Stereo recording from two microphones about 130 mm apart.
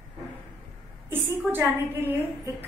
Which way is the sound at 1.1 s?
15° right (ahead or behind).